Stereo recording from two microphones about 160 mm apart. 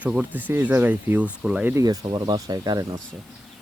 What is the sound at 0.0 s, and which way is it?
Speech, 10° right (ahead or behind).